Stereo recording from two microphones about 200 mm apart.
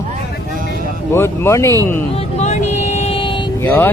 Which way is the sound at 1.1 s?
10° left (ahead or behind).